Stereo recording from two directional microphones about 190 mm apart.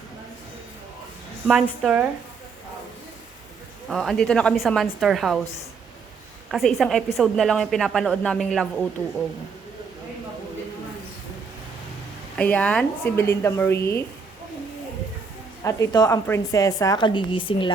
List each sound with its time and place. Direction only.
1.5 s a man's voice: centre (ahead or behind)
3.8 s a man's voice: centre (ahead or behind)
6.5 s a man's voice: centre (ahead or behind)
12.4 s speech: 5° left (ahead or behind)
15.6 s a woman's voice: 20° left (ahead or behind)